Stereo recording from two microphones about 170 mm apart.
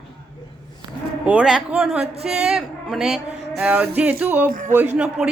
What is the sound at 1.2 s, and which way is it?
A child's voice, 5° right (ahead or behind).